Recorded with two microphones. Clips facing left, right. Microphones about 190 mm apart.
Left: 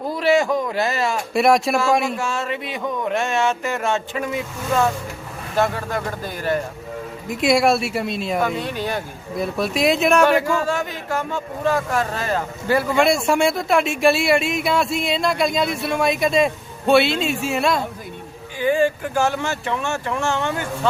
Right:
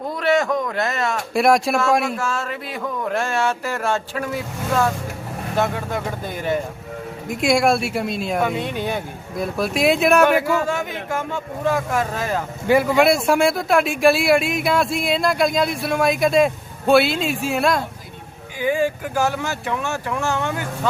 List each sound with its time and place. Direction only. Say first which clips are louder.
0.1 s a sound: left 1 dB; centre (ahead or behind)
0.8 s speech: left 1 dB; 30° left (ahead or behind)
1.3 s speech: even; centre (ahead or behind)